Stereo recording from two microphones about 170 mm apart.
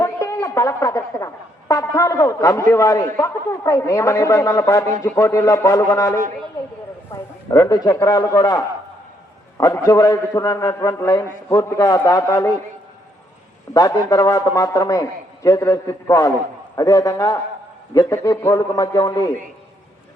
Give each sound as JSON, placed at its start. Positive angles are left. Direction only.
{"t": 0.0, "sound": "a man's voice", "side_deg": 20}
{"t": 14.1, "sound": "speech", "side_deg": 20}